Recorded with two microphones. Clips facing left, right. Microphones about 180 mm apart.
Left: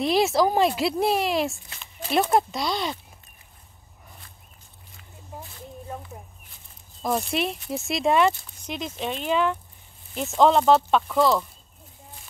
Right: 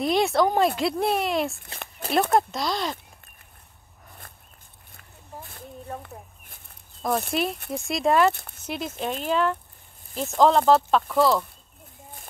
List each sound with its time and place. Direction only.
0.0 s speech: 5° left (ahead or behind)
1.8 s a sound: 60° right (ahead or behind)
2.3 s speech: centre (ahead or behind)
4.2 s a sound: 55° right (ahead or behind)
7.0 s speech: centre (ahead or behind)
8.3 s speech: 60° right (ahead or behind)
8.6 s speech: 5° right (ahead or behind)